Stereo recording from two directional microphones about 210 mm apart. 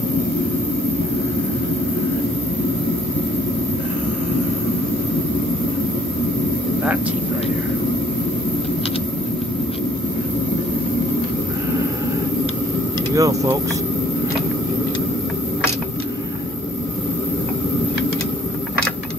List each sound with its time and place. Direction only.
13.1 s speech: 15° right (ahead or behind)